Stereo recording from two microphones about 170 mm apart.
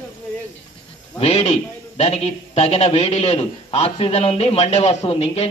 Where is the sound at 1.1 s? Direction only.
35° left (ahead or behind).